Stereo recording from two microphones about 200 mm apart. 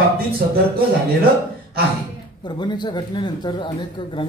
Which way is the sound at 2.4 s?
20° left (ahead or behind).